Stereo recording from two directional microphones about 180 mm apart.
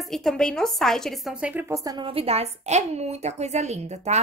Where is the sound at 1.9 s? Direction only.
25° right (ahead or behind).